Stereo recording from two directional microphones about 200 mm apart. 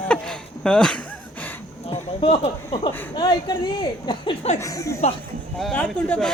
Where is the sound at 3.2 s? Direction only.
20° left (ahead or behind).